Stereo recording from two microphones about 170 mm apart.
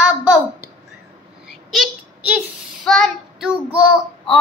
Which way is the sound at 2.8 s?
Centre (ahead or behind).